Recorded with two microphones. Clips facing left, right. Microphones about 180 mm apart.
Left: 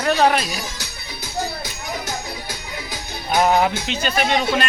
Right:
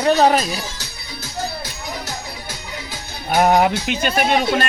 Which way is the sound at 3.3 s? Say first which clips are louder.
Right 2 dB; 50° right (ahead or behind).